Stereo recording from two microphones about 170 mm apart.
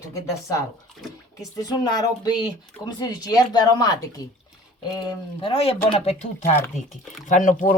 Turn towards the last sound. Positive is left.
turn(degrees=50)  # may be behind; listen again after turning